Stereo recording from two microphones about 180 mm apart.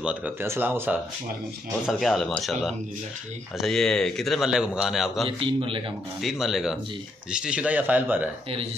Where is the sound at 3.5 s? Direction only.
5° left (ahead or behind).